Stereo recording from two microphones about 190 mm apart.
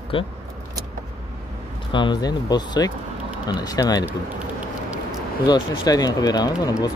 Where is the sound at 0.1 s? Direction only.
25° left (ahead or behind).